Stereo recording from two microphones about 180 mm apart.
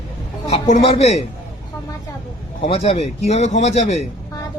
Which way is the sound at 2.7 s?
35° left (ahead or behind).